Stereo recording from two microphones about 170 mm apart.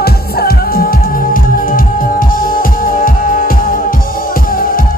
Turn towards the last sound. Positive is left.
turn(degrees=60)  # may be behind; listen again after turning